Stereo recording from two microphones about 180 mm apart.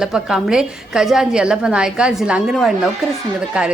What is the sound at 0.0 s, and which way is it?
A woman's voice, centre (ahead or behind).